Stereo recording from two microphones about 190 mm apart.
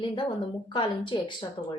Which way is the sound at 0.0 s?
25° left (ahead or behind).